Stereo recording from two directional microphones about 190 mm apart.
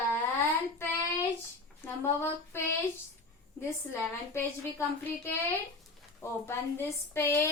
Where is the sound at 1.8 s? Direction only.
10° left (ahead or behind).